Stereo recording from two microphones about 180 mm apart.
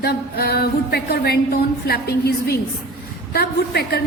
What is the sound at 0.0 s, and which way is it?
A woman's voice, 60° left (ahead or behind).